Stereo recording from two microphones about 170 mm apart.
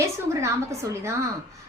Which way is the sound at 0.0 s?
15° right (ahead or behind).